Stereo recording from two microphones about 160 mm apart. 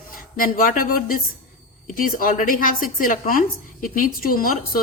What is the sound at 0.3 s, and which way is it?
A woman's voice, 60° left (ahead or behind).